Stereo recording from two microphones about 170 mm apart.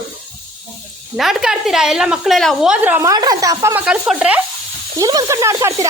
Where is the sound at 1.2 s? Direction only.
Centre (ahead or behind).